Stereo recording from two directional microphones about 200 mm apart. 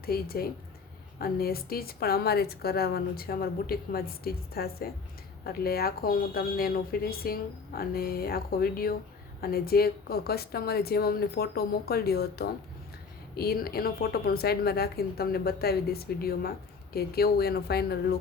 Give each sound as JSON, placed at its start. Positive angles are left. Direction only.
{"t": 0.0, "sound": "a woman's voice", "side_deg": 50}